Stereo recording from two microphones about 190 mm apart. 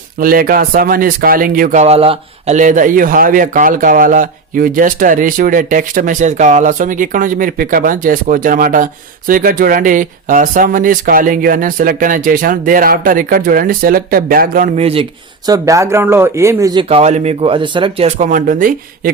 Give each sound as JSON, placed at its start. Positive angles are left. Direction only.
{"t": 0.2, "sound": "speech", "side_deg": -50}
{"t": 14.8, "sound": "speech", "side_deg": -30}
{"t": 15.4, "sound": "speech", "side_deg": -20}
{"t": 16.9, "sound": "speech", "side_deg": -35}